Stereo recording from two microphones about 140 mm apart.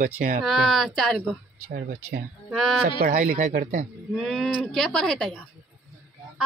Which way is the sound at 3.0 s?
90° right.